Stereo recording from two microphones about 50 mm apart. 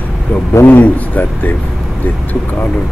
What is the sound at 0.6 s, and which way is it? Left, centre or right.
Speech, left.